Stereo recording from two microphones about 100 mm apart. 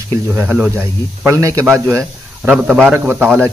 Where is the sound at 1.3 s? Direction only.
30° right (ahead or behind).